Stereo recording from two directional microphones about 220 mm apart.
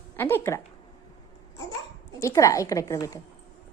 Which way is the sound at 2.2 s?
15° left (ahead or behind).